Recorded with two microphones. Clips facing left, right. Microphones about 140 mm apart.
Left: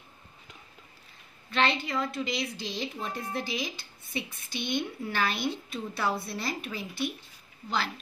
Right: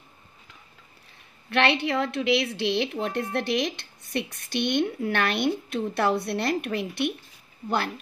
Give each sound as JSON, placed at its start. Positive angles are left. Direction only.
{"t": 1.5, "sound": "a woman's voice", "side_deg": -70}